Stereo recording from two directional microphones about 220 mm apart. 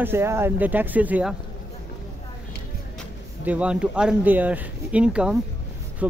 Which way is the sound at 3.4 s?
5° right (ahead or behind).